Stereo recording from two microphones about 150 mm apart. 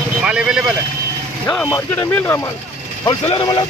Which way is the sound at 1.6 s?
20° left (ahead or behind).